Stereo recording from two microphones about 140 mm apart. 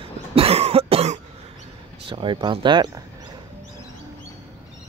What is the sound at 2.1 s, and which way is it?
Speech, 35° right (ahead or behind).